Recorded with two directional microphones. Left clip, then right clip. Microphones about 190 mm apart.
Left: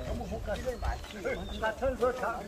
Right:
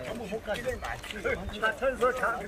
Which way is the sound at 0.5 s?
20° right (ahead or behind).